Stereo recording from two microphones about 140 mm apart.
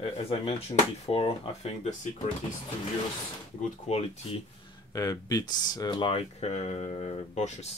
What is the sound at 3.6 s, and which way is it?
Speech, 50° left (ahead or behind).